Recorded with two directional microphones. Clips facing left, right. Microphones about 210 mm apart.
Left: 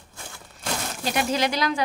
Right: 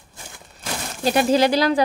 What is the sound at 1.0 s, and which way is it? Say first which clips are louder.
Speech: right 8 dB; 35° right (ahead or behind).